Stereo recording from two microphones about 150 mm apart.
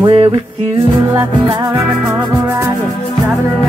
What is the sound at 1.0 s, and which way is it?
Music, 20° right (ahead or behind).